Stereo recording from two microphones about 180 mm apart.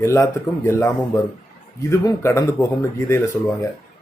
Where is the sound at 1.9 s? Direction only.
15° left (ahead or behind).